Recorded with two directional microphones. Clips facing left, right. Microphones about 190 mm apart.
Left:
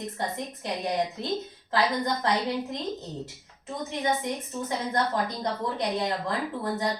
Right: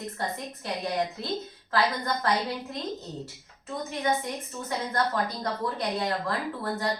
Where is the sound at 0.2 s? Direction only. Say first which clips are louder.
Left 2 dB; 20° left (ahead or behind).